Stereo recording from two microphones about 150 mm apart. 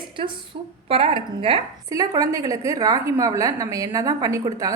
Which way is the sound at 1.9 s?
25° right (ahead or behind).